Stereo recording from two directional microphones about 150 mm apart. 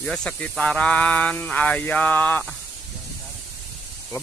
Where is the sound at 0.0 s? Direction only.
5° left (ahead or behind).